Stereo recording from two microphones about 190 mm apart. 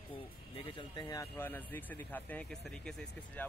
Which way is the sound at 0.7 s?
25° left (ahead or behind).